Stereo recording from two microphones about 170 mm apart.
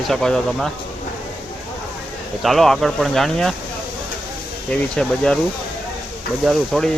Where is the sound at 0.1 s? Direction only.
5° left (ahead or behind).